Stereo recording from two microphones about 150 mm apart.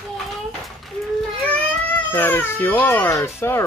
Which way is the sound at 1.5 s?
10° left (ahead or behind).